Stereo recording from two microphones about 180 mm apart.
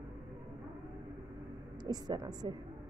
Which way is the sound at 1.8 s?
20° right (ahead or behind).